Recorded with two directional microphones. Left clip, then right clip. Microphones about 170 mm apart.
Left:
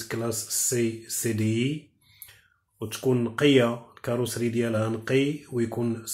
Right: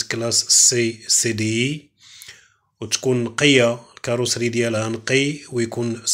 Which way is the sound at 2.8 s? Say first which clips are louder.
Right 5 dB; 20° right (ahead or behind).